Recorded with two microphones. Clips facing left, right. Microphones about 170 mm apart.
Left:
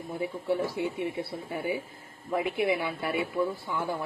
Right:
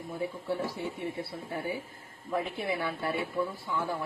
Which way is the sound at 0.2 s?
15° left (ahead or behind).